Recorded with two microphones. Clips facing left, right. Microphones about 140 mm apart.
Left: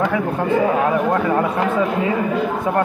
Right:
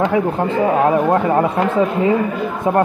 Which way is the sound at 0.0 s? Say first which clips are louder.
Right 3 dB; 20° right (ahead or behind).